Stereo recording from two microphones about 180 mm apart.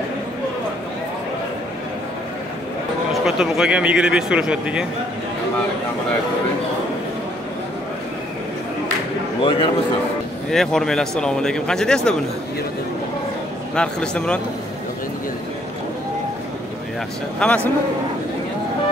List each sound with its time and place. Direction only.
3.3 s speech: 5° right (ahead or behind)
9.4 s a man's voice: 30° left (ahead or behind)
10.5 s speech: centre (ahead or behind)
13.7 s speech: 5° left (ahead or behind)
17.4 s a man's voice: 10° left (ahead or behind)